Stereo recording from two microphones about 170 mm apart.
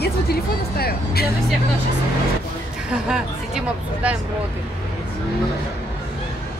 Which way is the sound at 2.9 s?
5° right (ahead or behind).